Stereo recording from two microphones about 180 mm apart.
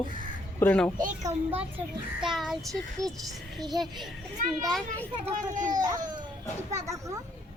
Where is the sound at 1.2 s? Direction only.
10° right (ahead or behind).